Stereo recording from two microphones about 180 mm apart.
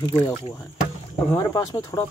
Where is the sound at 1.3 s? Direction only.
20° left (ahead or behind).